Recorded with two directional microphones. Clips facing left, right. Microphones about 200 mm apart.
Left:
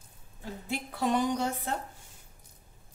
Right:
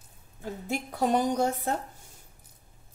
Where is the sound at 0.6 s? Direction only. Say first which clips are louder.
Right 3 dB; 45° right (ahead or behind).